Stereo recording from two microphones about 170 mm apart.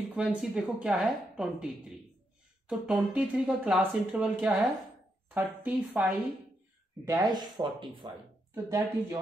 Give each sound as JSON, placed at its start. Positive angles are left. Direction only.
{"t": 0.1, "sound": "speech", "side_deg": -5}
{"t": 2.7, "sound": "a woman's voice", "side_deg": -5}
{"t": 7.1, "sound": "speech", "side_deg": -20}
{"t": 8.6, "sound": "a woman's voice", "side_deg": -15}